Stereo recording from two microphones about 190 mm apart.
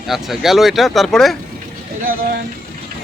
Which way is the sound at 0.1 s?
Centre (ahead or behind).